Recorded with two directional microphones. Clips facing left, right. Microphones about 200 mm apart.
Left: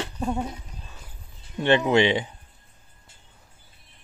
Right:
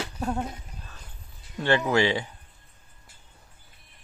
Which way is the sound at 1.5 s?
20° left (ahead or behind).